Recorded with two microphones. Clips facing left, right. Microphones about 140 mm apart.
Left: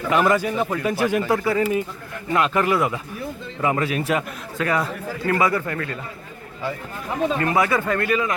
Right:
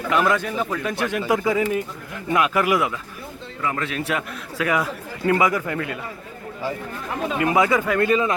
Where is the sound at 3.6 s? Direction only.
20° left (ahead or behind).